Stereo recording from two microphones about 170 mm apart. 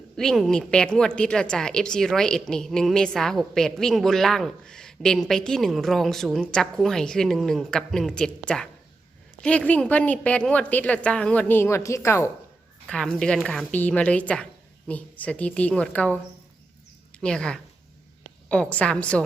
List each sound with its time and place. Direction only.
0.2 s a woman's voice: centre (ahead or behind)
12.9 s a woman's voice: 5° left (ahead or behind)
17.2 s a woman's voice: 5° left (ahead or behind)